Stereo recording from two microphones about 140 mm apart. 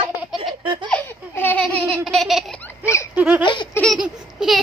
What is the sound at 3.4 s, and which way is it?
Baby laughter, 35° left (ahead or behind).